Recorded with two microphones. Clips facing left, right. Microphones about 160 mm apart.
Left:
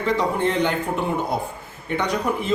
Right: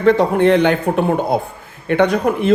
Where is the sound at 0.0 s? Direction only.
65° right (ahead or behind).